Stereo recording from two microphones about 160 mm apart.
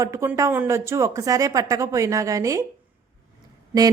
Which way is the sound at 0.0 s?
15° right (ahead or behind).